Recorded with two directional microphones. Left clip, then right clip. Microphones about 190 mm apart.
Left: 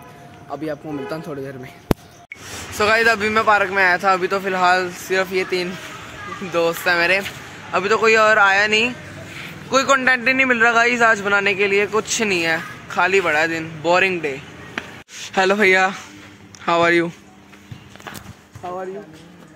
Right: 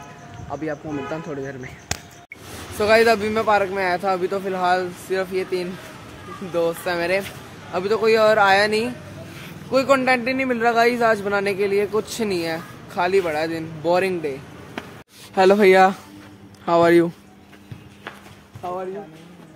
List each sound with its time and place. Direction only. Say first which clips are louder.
0.5 s speech: left 1 dB; 15° left (ahead or behind)
2.8 s a man's voice: even; centre (ahead or behind)
4.5 s speech: left 4 dB; 15° left (ahead or behind)
5.2 s speech: left 3 dB; 30° left (ahead or behind)
6.5 s a man's voice: left 4 dB; 10° left (ahead or behind); by 16.0 s 5° right (ahead or behind)
16.6 s speech: even; 15° right (ahead or behind)
18.6 s a sound: even; 10° left (ahead or behind)